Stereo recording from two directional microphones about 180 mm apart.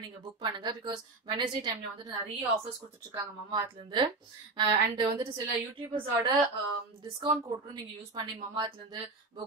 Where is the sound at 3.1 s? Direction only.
25° right (ahead or behind).